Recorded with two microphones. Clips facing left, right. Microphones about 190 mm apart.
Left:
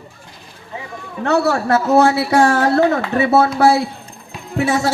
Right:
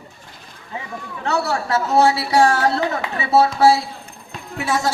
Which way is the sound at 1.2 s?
55° left (ahead or behind).